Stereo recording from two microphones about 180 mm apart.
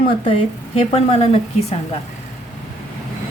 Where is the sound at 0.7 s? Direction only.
35° left (ahead or behind).